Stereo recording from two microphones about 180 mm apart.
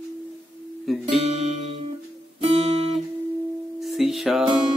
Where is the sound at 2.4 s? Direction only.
35° right (ahead or behind).